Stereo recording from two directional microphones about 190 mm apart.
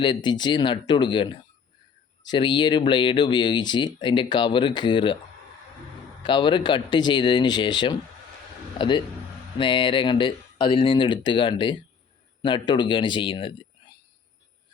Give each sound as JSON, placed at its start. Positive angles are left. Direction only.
{"t": 0.0, "sound": "speech", "side_deg": 25}
{"t": 6.2, "sound": "speech", "side_deg": 25}
{"t": 9.6, "sound": "speech", "side_deg": 25}